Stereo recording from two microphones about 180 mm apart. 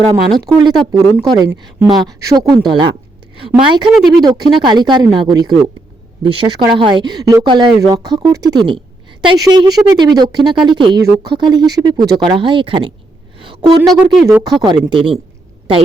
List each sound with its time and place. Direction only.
0.3 s speech: 20° right (ahead or behind)
13.4 s a sound: 25° right (ahead or behind)
13.8 s speech: centre (ahead or behind)
14.3 s speech: 15° right (ahead or behind)